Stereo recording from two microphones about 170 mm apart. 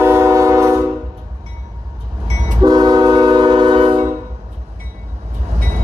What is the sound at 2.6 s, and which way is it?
Train, 25° right (ahead or behind).